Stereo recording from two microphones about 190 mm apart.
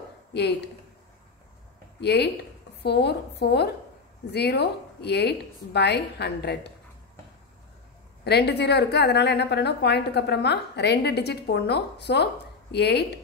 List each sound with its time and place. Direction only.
0.3 s speech: 60° left (ahead or behind)
2.0 s a woman's voice: 60° left (ahead or behind)
8.2 s a woman's voice: 60° left (ahead or behind)